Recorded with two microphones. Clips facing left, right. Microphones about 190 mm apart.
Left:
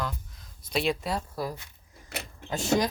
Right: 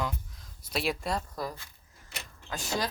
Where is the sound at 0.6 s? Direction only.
5° right (ahead or behind).